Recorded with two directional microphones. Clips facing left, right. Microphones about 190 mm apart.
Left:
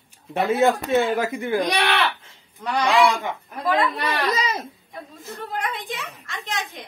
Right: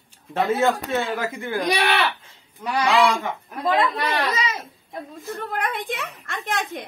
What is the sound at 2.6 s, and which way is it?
Speech, 5° right (ahead or behind).